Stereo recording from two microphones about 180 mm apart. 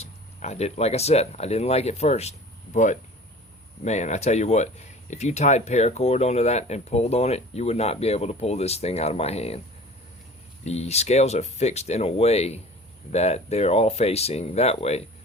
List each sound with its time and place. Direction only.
0.0 s speech: 35° left (ahead or behind)
10.7 s speech: 35° left (ahead or behind)